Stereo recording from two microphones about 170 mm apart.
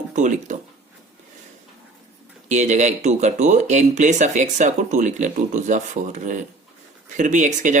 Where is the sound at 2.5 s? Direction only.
45° right (ahead or behind).